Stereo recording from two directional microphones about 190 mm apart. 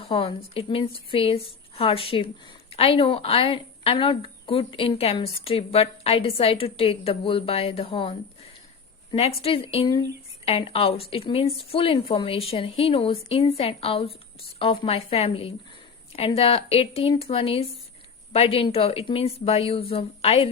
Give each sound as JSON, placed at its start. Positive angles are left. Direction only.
{"t": 0.0, "sound": "a woman's voice", "side_deg": 30}